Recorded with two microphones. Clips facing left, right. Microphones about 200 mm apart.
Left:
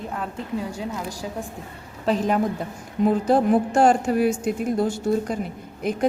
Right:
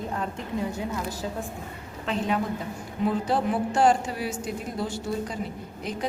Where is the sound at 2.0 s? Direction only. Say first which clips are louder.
Left 6 dB; 40° left (ahead or behind).